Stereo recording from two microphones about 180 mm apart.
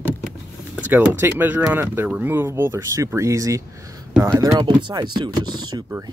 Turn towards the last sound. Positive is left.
turn(degrees=-25)  # may be behind; listen again after turning